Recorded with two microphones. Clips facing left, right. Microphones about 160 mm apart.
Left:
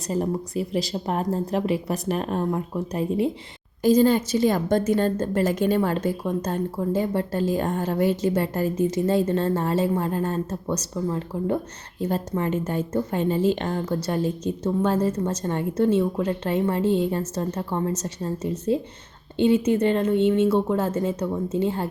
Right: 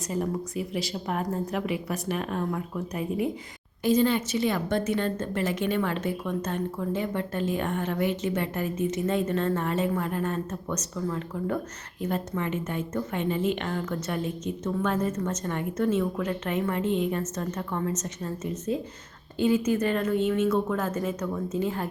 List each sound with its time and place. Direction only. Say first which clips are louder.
0.1 s a woman's voice: left 4 dB; 35° left (ahead or behind)